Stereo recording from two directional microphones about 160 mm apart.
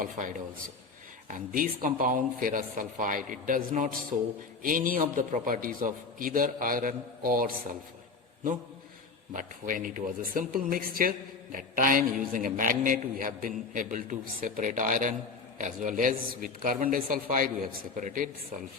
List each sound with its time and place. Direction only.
0.0 s a man's voice: 50° right (ahead or behind)
9.3 s a man's voice: 55° right (ahead or behind)